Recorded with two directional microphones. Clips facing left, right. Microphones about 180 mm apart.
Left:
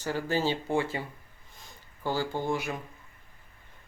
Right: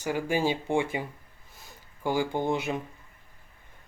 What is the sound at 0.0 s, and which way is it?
Speech, 15° right (ahead or behind).